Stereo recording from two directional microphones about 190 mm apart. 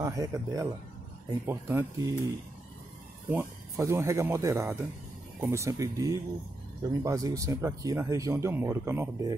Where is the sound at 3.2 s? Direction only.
15° right (ahead or behind).